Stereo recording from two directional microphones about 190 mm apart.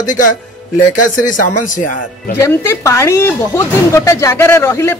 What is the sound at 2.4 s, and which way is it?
Speech, 15° left (ahead or behind).